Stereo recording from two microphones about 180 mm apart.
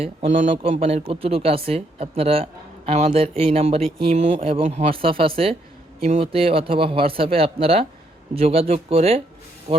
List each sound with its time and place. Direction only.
0.0 s speech: 35° right (ahead or behind)